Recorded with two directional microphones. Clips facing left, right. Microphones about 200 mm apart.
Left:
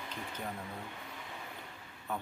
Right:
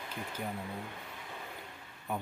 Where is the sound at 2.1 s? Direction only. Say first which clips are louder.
Right 2 dB; 10° right (ahead or behind).